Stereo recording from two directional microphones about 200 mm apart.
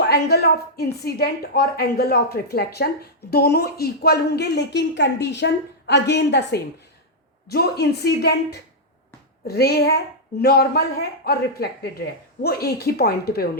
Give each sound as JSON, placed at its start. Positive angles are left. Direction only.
{"t": 0.0, "sound": "a woman's voice", "side_deg": 55}